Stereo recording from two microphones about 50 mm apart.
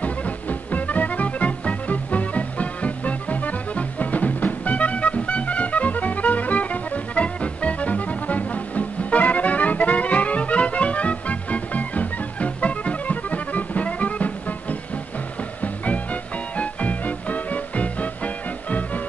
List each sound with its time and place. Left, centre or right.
0.0 s music: left